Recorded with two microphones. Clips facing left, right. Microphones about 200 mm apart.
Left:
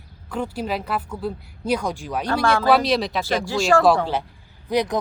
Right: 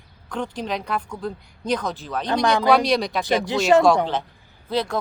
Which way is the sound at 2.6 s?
Centre (ahead or behind).